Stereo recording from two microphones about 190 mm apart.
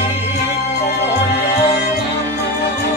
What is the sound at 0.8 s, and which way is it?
Music, 55° left (ahead or behind).